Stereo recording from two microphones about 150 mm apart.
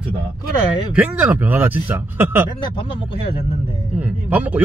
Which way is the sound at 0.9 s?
10° right (ahead or behind).